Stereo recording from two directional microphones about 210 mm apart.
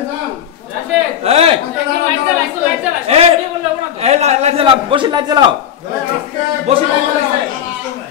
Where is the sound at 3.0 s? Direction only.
30° right (ahead or behind).